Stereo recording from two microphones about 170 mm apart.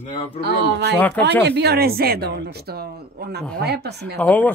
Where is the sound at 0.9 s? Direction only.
10° left (ahead or behind).